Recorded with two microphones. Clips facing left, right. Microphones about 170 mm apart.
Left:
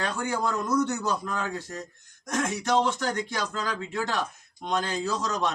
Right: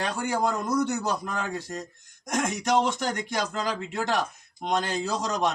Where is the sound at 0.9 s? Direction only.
15° right (ahead or behind).